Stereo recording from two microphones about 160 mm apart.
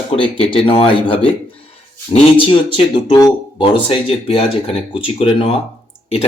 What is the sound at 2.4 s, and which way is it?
Speech, 30° left (ahead or behind).